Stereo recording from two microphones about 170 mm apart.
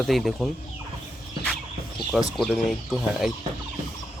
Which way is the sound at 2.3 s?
Centre (ahead or behind).